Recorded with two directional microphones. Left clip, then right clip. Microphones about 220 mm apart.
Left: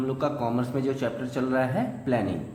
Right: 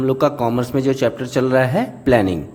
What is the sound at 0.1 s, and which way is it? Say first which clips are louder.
A man's voice: right 11 dB; 45° right (ahead or behind).